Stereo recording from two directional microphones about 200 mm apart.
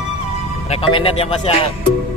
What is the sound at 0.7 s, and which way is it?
Speech, 25° left (ahead or behind).